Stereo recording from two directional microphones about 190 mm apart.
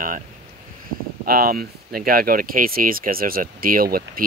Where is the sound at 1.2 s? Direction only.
50° right (ahead or behind).